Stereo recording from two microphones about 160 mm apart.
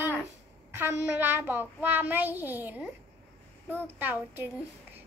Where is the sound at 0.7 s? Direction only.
15° right (ahead or behind).